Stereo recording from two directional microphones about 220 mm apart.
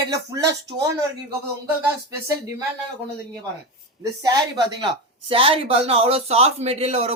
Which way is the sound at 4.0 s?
15° right (ahead or behind).